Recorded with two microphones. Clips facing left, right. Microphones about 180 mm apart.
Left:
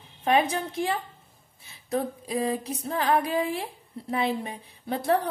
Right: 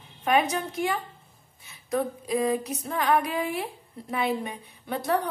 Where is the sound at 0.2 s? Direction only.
30° left (ahead or behind).